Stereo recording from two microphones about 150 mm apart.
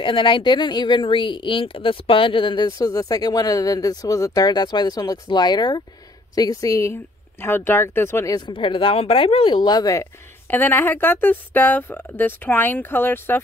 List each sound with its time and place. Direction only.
0.0 s speech: 35° left (ahead or behind); by 8.4 s 15° left (ahead or behind)
8.4 s speech: 35° left (ahead or behind)
10.5 s speech: 15° left (ahead or behind)